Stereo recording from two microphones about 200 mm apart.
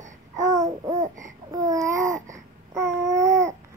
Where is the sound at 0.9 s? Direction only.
40° right (ahead or behind).